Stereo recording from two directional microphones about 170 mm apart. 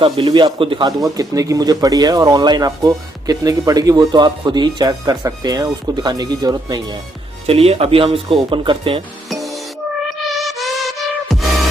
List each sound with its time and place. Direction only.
0.0 s speech: 30° right (ahead or behind)
7.4 s speech: 35° right (ahead or behind)
9.3 s music: centre (ahead or behind)